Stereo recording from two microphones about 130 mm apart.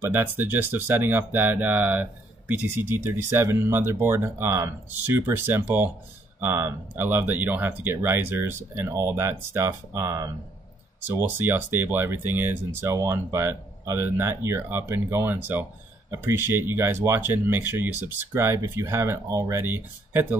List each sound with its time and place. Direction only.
0.0 s speech: 15° right (ahead or behind)